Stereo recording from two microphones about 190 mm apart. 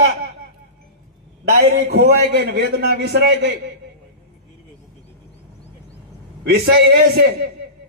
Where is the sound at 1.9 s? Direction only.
60° right (ahead or behind).